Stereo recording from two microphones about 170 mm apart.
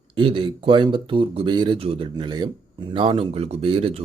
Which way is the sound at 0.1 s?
30° right (ahead or behind).